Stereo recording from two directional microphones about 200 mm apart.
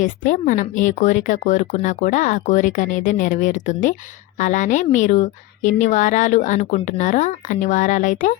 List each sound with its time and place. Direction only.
0.0 s a woman's voice: 40° left (ahead or behind)